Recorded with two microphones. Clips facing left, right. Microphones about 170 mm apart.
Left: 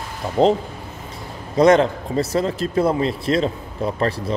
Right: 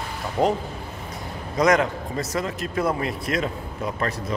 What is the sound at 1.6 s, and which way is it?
A man's voice, 30° left (ahead or behind).